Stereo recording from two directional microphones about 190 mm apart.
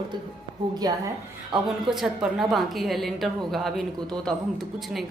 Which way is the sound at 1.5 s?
Centre (ahead or behind).